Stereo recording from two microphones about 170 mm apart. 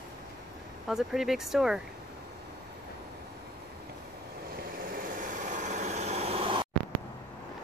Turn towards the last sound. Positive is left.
turn(degrees=-30)  # may be behind; listen again after turning